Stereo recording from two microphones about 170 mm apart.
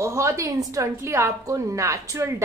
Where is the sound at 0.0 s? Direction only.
15° right (ahead or behind).